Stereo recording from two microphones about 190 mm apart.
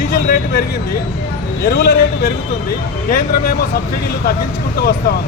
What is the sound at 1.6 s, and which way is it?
Speech, 55° left (ahead or behind).